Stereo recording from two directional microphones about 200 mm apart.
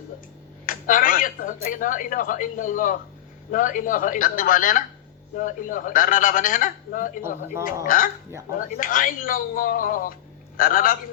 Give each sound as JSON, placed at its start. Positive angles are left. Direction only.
{"t": 0.6, "sound": "speech", "side_deg": 45}